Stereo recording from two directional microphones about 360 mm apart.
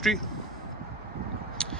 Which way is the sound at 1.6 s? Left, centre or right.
Centre.